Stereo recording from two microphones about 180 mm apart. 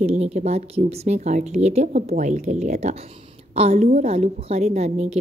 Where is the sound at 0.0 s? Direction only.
35° right (ahead or behind).